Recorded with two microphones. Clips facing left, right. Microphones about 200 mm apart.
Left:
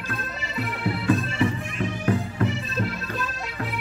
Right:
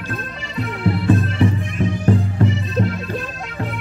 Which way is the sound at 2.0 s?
30° right (ahead or behind).